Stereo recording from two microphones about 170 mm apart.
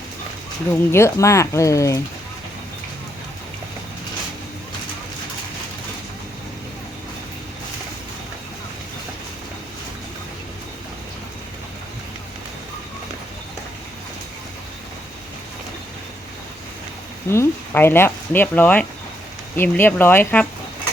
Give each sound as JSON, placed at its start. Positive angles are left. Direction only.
{"t": 0.7, "sound": "speech", "side_deg": 15}
{"t": 17.3, "sound": "speech", "side_deg": 15}